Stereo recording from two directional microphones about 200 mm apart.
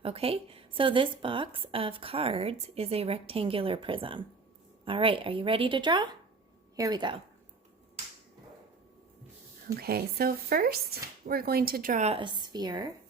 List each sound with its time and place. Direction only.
0.0 s a woman's voice: 30° right (ahead or behind)
9.7 s speech: 50° right (ahead or behind); by 12.9 s 20° right (ahead or behind)